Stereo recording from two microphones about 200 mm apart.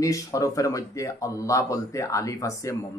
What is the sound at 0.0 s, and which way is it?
Speech, 15° left (ahead or behind).